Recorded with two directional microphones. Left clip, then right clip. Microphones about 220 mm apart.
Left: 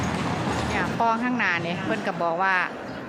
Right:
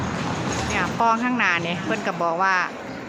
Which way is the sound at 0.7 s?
5° right (ahead or behind).